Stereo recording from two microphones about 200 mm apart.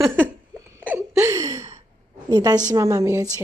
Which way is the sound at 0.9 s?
10° right (ahead or behind).